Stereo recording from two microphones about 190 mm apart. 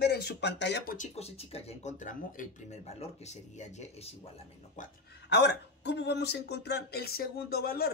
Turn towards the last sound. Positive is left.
turn(degrees=55)  # may be behind; listen again after turning